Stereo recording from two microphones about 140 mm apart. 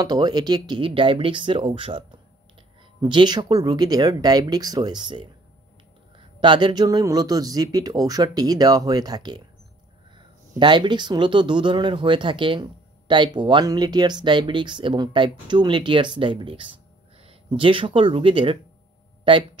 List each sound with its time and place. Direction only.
0.0 s speech: 30° right (ahead or behind)
10.6 s speech: 35° right (ahead or behind)